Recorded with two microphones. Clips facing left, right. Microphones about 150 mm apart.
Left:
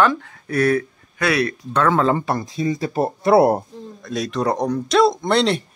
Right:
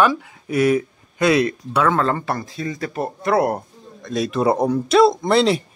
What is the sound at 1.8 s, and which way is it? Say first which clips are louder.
Speech: left 2 dB; 5° left (ahead or behind).